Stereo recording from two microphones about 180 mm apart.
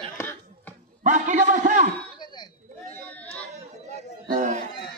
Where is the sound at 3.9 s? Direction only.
40° right (ahead or behind).